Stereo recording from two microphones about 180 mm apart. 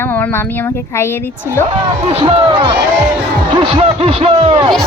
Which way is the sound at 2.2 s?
35° right (ahead or behind).